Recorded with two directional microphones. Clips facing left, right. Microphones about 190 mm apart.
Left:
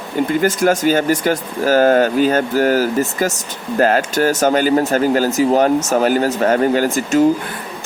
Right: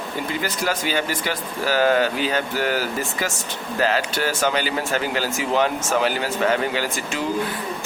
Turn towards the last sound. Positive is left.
turn(degrees=45)  # may be behind; listen again after turning